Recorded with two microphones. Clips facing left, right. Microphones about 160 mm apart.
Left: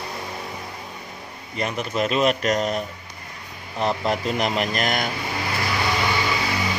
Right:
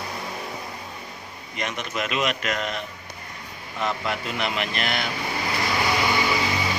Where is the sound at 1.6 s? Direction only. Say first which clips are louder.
Left 5 dB; 35° left (ahead or behind).